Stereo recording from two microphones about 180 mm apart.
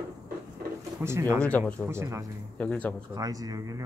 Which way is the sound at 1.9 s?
15° right (ahead or behind).